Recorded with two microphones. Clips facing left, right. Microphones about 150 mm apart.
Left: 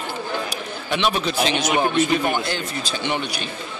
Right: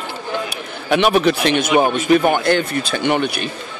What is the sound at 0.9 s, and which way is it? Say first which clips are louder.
Speech: right 8 dB; 60° right (ahead or behind).